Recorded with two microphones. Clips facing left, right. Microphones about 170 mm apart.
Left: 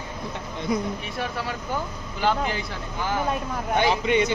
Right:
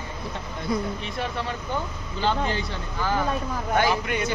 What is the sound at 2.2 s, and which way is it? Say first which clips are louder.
Speech: left 1 dB; 5° left (ahead or behind).